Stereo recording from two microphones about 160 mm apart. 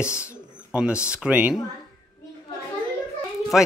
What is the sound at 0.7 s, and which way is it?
Speech, 5° right (ahead or behind).